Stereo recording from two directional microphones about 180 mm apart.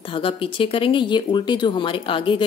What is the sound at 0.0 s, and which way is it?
A woman's voice, 30° left (ahead or behind).